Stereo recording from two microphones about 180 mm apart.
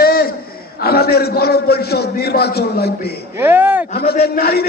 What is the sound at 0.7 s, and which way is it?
A man's voice, 60° left (ahead or behind).